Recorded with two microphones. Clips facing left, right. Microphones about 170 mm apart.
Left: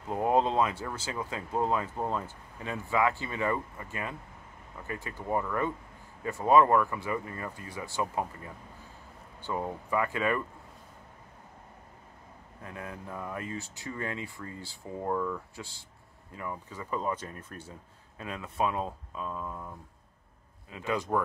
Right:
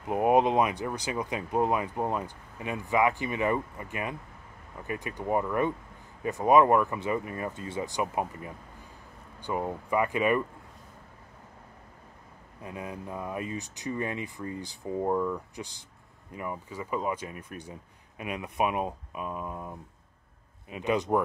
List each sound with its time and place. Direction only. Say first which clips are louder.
0.0 s speech: right 3 dB; 15° right (ahead or behind)
12.6 s speech: right 3 dB; 20° right (ahead or behind)